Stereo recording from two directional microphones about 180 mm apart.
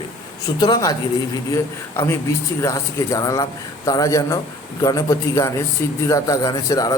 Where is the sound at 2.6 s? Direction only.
20° left (ahead or behind).